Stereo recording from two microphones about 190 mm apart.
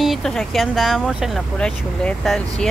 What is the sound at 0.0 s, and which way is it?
Speech, centre (ahead or behind).